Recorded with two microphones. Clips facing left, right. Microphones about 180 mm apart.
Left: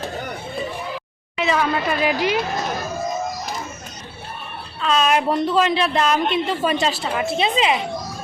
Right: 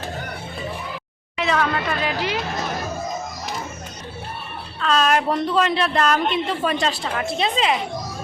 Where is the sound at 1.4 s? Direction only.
5° left (ahead or behind).